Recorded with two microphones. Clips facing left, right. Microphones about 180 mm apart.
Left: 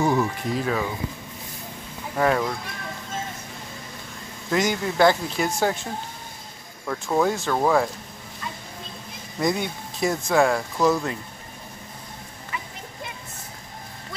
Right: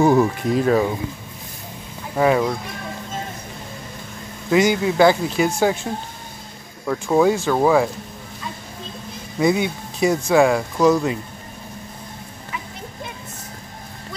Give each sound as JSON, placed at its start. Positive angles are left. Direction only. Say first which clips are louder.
{"t": 0.0, "sound": "speech", "louder": "right 7 dB", "side_deg": -50}
{"t": 2.1, "sound": "speech", "louder": "right 5 dB", "side_deg": -10}
{"t": 4.5, "sound": "speech", "louder": "right 6 dB", "side_deg": -10}
{"t": 9.4, "sound": "speech", "louder": "right 6 dB", "side_deg": -5}